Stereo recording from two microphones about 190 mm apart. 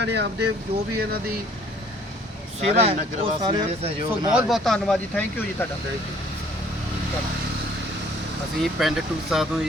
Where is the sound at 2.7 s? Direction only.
30° right (ahead or behind).